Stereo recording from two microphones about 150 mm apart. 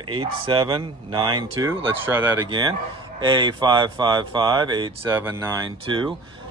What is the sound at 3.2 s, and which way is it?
Speech, 30° right (ahead or behind).